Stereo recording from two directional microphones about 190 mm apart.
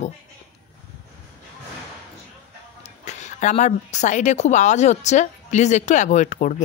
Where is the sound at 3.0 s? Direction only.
40° left (ahead or behind).